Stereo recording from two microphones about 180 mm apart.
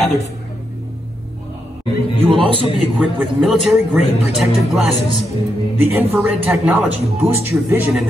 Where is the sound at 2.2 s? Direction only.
30° right (ahead or behind).